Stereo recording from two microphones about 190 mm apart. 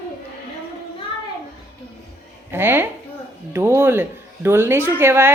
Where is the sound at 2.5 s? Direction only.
10° right (ahead or behind).